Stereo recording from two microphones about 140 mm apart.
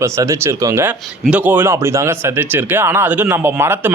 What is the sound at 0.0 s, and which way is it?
Speech, 20° right (ahead or behind).